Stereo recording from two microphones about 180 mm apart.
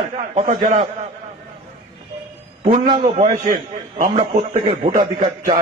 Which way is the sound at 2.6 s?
35° right (ahead or behind).